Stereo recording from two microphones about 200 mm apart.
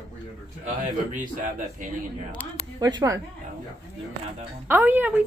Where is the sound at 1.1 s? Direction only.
45° right (ahead or behind).